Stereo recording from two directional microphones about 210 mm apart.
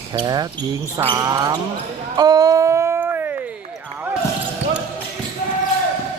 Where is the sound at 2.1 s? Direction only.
20° right (ahead or behind).